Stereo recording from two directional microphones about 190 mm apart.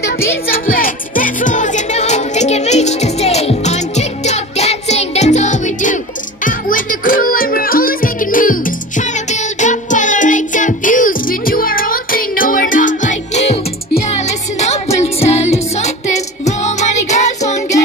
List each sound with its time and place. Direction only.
0.7 s music: 45° left (ahead or behind)
15.1 s music: 35° left (ahead or behind)